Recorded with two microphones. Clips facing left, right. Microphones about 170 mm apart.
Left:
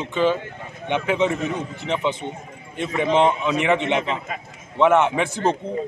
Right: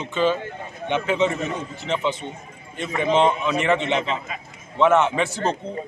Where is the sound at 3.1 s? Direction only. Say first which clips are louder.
Even; 15° left (ahead or behind).